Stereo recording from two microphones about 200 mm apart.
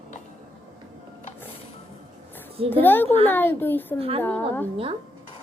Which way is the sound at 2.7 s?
10° left (ahead or behind).